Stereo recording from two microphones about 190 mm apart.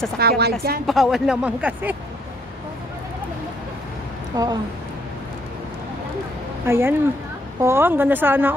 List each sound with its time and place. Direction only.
0.2 s a woman's voice: 55° right (ahead or behind)
0.8 s speech: centre (ahead or behind)
4.3 s speech: 20° right (ahead or behind)
6.6 s a woman's voice: 15° right (ahead or behind)